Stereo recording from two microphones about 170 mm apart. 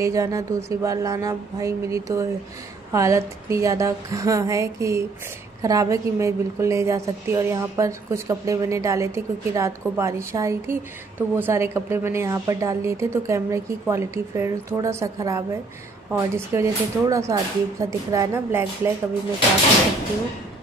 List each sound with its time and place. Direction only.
0.0 s a woman's voice: 20° right (ahead or behind)